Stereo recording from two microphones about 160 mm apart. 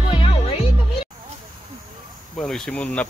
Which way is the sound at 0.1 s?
35° left (ahead or behind).